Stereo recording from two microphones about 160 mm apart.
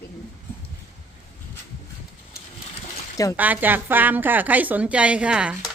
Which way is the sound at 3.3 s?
10° right (ahead or behind).